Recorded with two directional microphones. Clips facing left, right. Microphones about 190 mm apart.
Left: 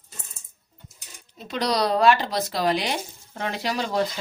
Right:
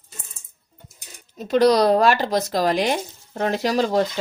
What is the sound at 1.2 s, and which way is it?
Speech, 45° right (ahead or behind).